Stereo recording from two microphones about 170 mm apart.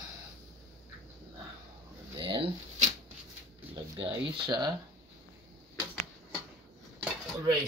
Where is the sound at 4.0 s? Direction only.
30° right (ahead or behind).